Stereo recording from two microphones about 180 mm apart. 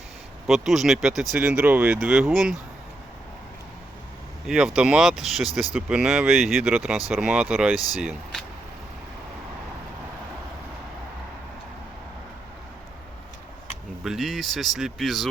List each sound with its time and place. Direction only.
0.4 s speech: centre (ahead or behind)
4.4 s speech: 5° right (ahead or behind)
14.0 s speech: centre (ahead or behind)